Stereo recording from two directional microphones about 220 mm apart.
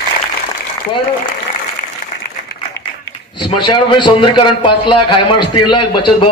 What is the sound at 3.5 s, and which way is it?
A man's voice, 20° left (ahead or behind).